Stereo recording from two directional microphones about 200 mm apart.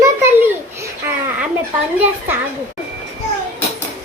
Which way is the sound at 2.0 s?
10° right (ahead or behind).